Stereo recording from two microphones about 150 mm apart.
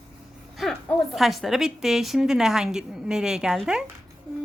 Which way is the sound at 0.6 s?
Centre (ahead or behind).